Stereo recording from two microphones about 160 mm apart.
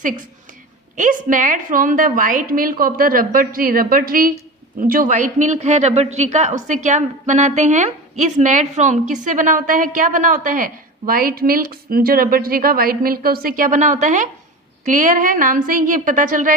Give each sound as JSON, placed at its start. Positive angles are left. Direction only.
{"t": 0.9, "sound": "a woman's voice", "side_deg": -55}